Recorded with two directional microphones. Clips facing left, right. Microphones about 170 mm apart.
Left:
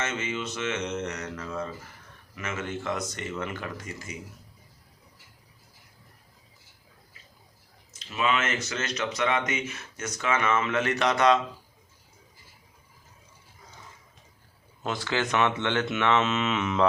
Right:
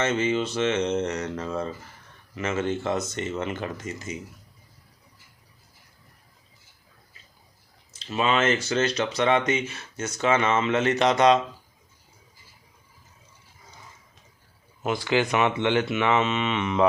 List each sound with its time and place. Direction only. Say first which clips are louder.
0.0 s mantra: right 8 dB; 30° right (ahead or behind)
2.3 s speech: right 7 dB; 30° right (ahead or behind)
7.9 s speech: right 3 dB; 30° right (ahead or behind)
14.8 s speech: right 5 dB; 15° right (ahead or behind)
16.2 s mantra: right 1 dB; centre (ahead or behind)